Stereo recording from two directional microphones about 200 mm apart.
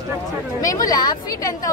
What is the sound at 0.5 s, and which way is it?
Speech, 15° left (ahead or behind).